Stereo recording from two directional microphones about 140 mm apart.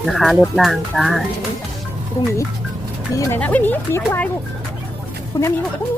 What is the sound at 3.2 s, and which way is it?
Speech, 25° left (ahead or behind).